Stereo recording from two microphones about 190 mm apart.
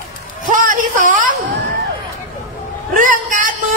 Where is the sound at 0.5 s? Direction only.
45° right (ahead or behind).